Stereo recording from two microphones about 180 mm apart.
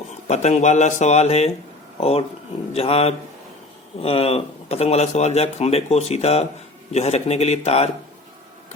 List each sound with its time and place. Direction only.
0.3 s speech: 40° left (ahead or behind)